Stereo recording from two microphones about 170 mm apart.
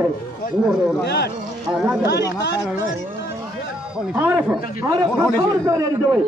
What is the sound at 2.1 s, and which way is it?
Speech, 75° left (ahead or behind).